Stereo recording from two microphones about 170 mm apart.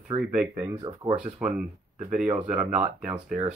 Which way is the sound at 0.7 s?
25° right (ahead or behind).